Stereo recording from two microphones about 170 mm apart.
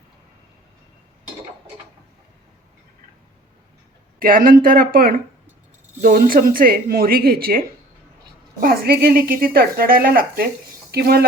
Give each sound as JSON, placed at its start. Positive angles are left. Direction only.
{"t": 4.2, "sound": "speech", "side_deg": -60}
{"t": 8.6, "sound": "speech", "side_deg": -65}